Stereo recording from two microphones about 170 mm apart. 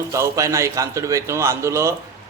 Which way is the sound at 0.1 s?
20° right (ahead or behind).